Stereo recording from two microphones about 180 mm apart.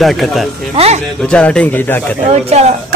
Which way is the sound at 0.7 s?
35° right (ahead or behind).